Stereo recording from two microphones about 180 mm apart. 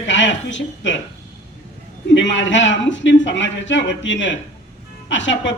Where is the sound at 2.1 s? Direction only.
90° left.